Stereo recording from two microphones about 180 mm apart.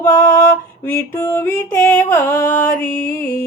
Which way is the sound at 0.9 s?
15° left (ahead or behind).